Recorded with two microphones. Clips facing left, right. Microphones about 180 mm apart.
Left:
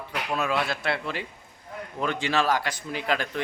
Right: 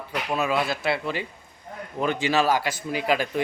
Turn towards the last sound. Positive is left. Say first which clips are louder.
# right 4 dB
turn(degrees=-5)  # may be behind; listen again after turning